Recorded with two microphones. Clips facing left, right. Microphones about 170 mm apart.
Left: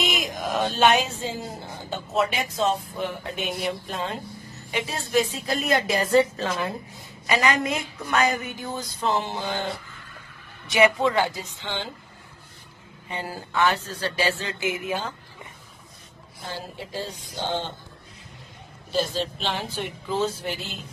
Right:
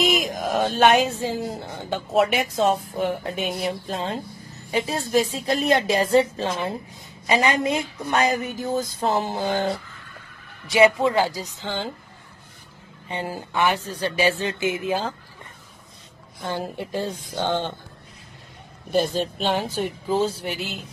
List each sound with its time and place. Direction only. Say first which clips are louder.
0.2 s speech: right 3 dB; 45° right (ahead or behind); by 2.2 s 65° right (ahead or behind)
2.3 s speech: right 4 dB; 50° right (ahead or behind)
10.7 s a man's voice: right 3 dB; 25° right (ahead or behind)
11.6 s speech: right 3 dB; 40° right (ahead or behind)
13.1 s speech: right 2 dB; 20° right (ahead or behind)
14.5 s a man's voice: right 4 dB; 30° right (ahead or behind)
16.4 s a woman's voice: right 7 dB; 60° right (ahead or behind)
18.9 s speech: right 4 dB; 55° right (ahead or behind); by 20.5 s 30° right (ahead or behind)